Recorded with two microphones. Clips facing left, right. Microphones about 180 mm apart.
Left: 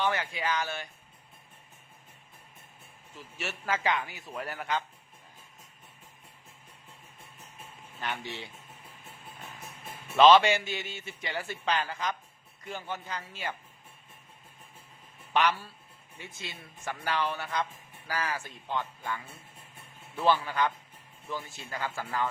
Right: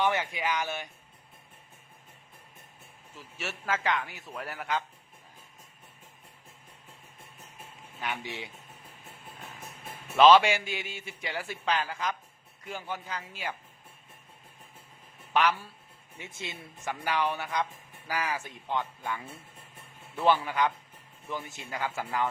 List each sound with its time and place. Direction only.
0.0 s speech: 20° right (ahead or behind)
3.3 s a man's voice: centre (ahead or behind)
8.0 s speech: 10° right (ahead or behind)
10.2 s speech: 10° right (ahead or behind)
15.3 s a man's voice: 5° right (ahead or behind)
16.1 s speech: 25° right (ahead or behind)
20.2 s speech: 15° right (ahead or behind)